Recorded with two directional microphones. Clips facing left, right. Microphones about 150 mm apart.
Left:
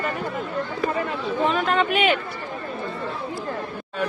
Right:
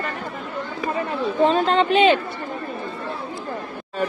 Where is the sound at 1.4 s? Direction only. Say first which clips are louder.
Right 4 dB; 30° right (ahead or behind).